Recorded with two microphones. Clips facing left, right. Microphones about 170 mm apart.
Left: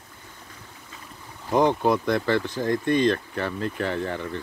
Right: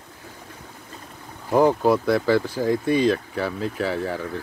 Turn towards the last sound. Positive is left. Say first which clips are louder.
# right 2 dB
turn(degrees=-5)  # may be behind; listen again after turning